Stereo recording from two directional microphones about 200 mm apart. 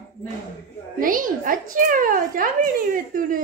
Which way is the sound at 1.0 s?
45° right (ahead or behind).